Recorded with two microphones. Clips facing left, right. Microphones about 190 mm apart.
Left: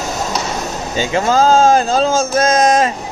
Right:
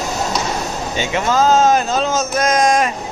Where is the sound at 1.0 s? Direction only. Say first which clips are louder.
Left 3 dB; 35° left (ahead or behind).